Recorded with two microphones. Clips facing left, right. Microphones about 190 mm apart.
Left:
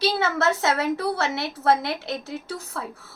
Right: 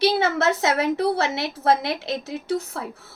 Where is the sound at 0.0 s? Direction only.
20° right (ahead or behind).